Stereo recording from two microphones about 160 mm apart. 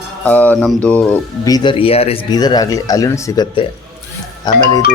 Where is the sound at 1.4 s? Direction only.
25° left (ahead or behind).